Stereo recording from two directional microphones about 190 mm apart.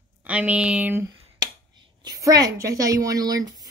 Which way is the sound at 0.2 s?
5° right (ahead or behind).